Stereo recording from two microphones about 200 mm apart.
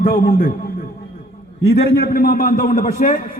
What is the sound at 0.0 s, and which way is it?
Speech, 45° left (ahead or behind).